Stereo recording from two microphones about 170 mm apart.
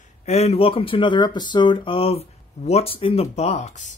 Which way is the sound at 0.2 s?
40° left (ahead or behind).